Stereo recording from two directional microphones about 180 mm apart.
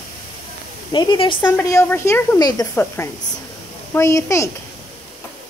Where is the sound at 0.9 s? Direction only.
25° left (ahead or behind).